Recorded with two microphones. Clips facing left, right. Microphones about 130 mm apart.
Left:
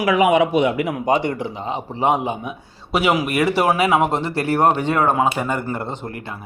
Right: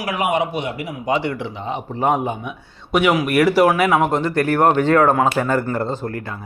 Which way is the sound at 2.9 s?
30° left (ahead or behind).